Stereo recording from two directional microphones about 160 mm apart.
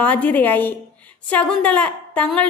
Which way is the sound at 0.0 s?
10° left (ahead or behind).